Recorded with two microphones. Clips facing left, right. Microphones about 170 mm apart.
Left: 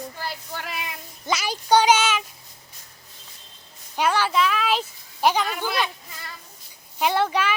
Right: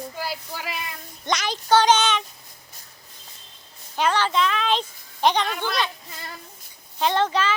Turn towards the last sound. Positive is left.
turn(degrees=10)  # may be behind; listen again after turning